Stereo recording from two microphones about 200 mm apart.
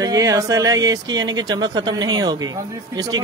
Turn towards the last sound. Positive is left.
turn(degrees=-20)  # may be behind; listen again after turning